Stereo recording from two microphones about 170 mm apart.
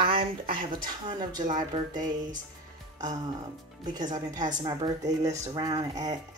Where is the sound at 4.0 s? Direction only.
25° right (ahead or behind).